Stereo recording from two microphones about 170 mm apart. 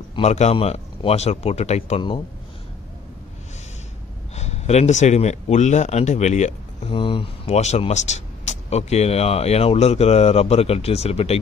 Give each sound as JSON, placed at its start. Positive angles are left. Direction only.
{"t": 0.1, "sound": "speech", "side_deg": 40}
{"t": 4.4, "sound": "speech", "side_deg": 40}